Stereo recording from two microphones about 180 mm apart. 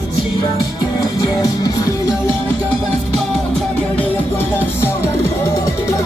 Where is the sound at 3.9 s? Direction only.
10° left (ahead or behind).